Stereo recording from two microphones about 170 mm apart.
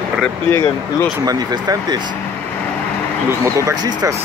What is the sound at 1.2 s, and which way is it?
Speech, 20° right (ahead or behind).